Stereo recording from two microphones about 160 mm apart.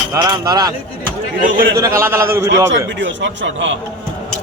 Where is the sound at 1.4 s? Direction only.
70° right (ahead or behind).